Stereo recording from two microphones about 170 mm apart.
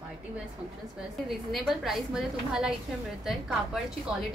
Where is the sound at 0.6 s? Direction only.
5° right (ahead or behind).